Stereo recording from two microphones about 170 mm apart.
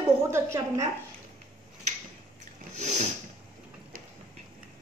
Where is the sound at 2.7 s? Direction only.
40° right (ahead or behind).